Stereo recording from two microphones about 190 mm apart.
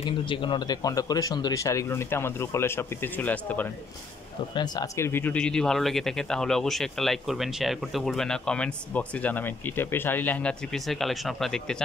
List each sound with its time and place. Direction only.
0.0 s speech: 25° left (ahead or behind); by 3.7 s 10° left (ahead or behind)
4.6 s speech: 20° left (ahead or behind); by 11.8 s 5° left (ahead or behind)